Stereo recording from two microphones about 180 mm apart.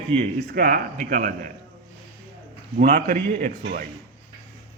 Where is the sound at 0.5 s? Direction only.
50° right (ahead or behind).